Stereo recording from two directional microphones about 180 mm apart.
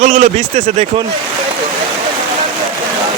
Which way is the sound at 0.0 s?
45° right (ahead or behind).